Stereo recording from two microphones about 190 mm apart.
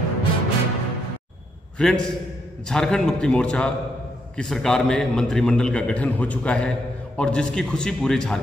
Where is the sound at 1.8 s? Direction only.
5° left (ahead or behind).